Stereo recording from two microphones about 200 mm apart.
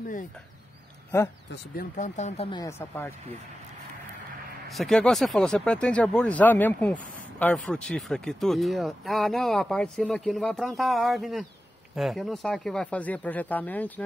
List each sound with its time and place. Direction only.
2.0 s speech: 35° left (ahead or behind)
2.6 s speech: 10° left (ahead or behind)
4.6 s speech: centre (ahead or behind)